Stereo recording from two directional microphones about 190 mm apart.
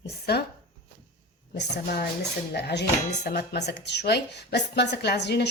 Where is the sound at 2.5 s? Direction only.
60° left (ahead or behind).